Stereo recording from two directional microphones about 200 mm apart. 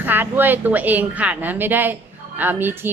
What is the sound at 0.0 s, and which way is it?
A woman's voice, 10° right (ahead or behind).